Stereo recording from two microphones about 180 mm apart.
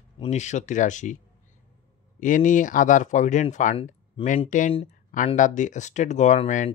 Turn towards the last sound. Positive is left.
turn(degrees=40)  # may be behind; listen again after turning